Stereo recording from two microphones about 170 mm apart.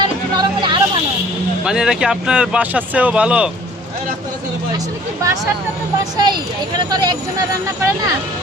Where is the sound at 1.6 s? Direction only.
5° right (ahead or behind).